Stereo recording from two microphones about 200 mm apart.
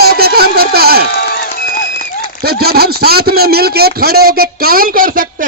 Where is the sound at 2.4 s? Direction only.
50° right (ahead or behind).